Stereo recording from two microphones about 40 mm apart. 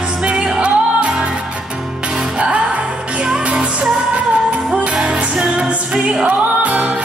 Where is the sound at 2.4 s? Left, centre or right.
Right.